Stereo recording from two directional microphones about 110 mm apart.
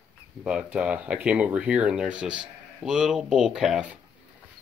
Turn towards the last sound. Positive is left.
turn(degrees=-10)  # may be behind; listen again after turning